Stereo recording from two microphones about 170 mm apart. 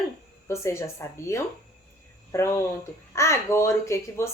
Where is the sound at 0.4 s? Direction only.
15° left (ahead or behind).